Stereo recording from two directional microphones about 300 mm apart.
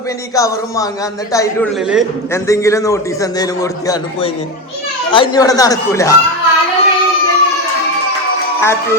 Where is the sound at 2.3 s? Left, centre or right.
Centre.